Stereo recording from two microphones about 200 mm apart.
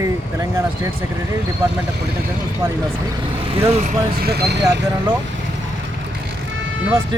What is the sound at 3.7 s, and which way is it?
Speech, 35° right (ahead or behind).